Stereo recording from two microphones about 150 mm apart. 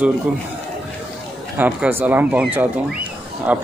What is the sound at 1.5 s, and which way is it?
Speech, 10° right (ahead or behind).